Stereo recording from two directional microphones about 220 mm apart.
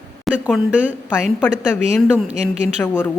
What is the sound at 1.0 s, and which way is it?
Speech, 5° left (ahead or behind).